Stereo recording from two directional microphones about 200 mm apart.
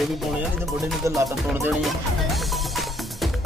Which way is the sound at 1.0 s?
15° right (ahead or behind).